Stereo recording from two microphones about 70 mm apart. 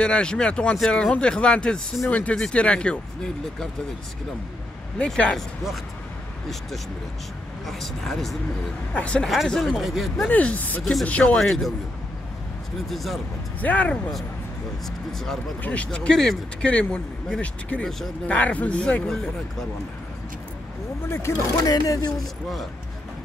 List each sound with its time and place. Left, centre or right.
0.0 s speech: centre
4.9 s speech: centre
7.6 s speech: centre
8.9 s speech: centre
9.5 s speech: centre
10.2 s speech: left
10.8 s speech: centre
11.1 s speech: centre
11.3 s speech: centre
12.8 s speech: centre
13.6 s speech: left
15.6 s speech: centre
21.1 s speech: left
21.6 s speech: left